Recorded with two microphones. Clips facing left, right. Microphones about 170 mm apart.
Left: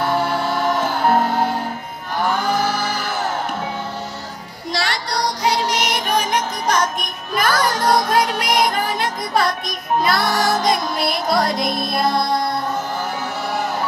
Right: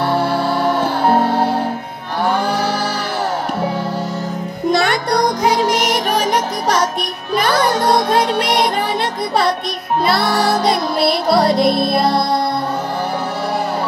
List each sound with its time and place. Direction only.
0.1 s music: 30° right (ahead or behind)
4.6 s music: 55° right (ahead or behind)
7.3 s music: 25° right (ahead or behind)
10.0 s music: 30° right (ahead or behind)